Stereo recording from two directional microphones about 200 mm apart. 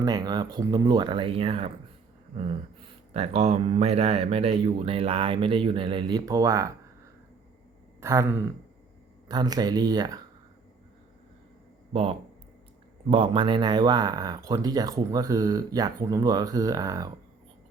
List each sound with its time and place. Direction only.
0.0 s speech: 20° right (ahead or behind)
13.1 s speech: 25° right (ahead or behind)